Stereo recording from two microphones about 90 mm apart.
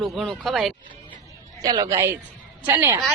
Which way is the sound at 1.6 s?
45° right (ahead or behind).